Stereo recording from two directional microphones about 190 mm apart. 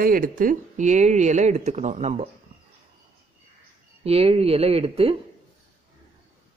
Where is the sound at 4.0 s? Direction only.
30° right (ahead or behind).